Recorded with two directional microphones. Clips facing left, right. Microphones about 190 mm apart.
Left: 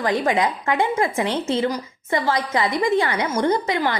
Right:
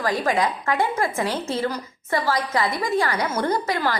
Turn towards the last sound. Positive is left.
turn(degrees=20)  # may be behind; listen again after turning